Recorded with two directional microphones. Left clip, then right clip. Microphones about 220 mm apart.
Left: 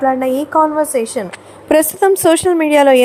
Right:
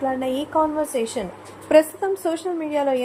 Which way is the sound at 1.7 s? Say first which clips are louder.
Left 6 dB; 45° left (ahead or behind).